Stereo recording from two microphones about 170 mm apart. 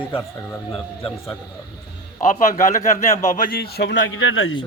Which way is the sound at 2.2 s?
50° left (ahead or behind).